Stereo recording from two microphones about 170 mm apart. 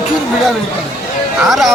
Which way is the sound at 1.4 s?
Centre (ahead or behind).